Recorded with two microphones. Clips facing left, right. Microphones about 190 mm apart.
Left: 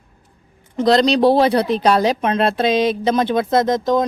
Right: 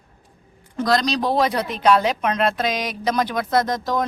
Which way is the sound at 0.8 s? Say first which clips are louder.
Left 7 dB; 30° left (ahead or behind).